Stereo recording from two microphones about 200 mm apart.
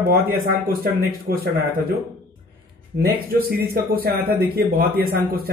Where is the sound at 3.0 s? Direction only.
50° right (ahead or behind).